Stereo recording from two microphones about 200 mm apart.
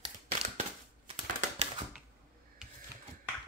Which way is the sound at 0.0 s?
30° right (ahead or behind).